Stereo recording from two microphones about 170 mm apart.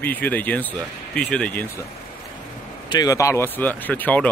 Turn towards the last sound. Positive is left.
turn(degrees=10)  # may be behind; listen again after turning